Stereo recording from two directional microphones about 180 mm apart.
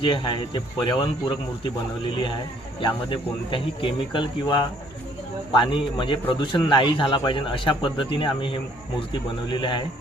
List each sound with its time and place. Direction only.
0.0 s a man's voice: 25° left (ahead or behind)
2.8 s a man's voice: 30° left (ahead or behind)